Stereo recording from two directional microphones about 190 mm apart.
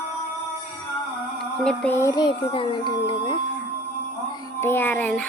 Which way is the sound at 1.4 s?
5° left (ahead or behind).